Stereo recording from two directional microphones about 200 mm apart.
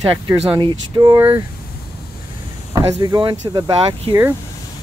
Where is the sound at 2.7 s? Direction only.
20° right (ahead or behind).